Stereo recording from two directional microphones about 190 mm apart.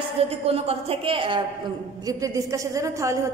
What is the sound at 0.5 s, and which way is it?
Speech, 30° right (ahead or behind).